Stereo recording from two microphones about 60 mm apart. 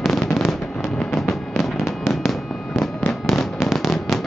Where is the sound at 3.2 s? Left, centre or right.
Centre.